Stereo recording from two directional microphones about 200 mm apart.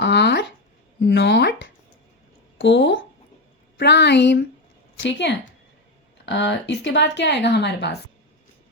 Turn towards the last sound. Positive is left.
turn(degrees=60)  # may be behind; listen again after turning